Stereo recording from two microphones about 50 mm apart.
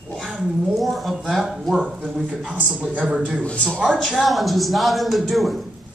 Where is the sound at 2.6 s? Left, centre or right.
Right.